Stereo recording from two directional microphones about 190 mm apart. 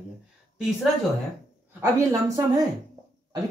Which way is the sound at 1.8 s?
20° right (ahead or behind).